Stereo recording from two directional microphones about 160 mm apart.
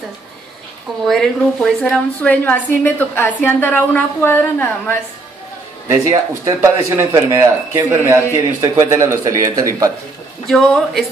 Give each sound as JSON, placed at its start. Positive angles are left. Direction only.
{"t": 1.0, "sound": "a woman's voice", "side_deg": 0}
{"t": 6.4, "sound": "speech", "side_deg": -20}
{"t": 10.4, "sound": "speech", "side_deg": 5}